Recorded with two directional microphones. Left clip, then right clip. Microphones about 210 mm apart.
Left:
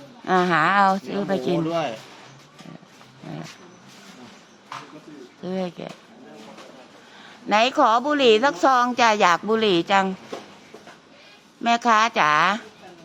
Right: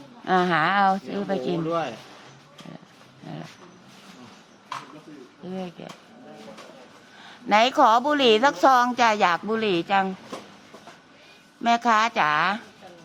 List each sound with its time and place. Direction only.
0.3 s a woman's voice: centre (ahead or behind)
1.7 s speech: 50° left (ahead or behind)
5.5 s a woman's voice: 20° left (ahead or behind)
7.4 s a woman's voice: centre (ahead or behind)
11.6 s a woman's voice: 5° left (ahead or behind)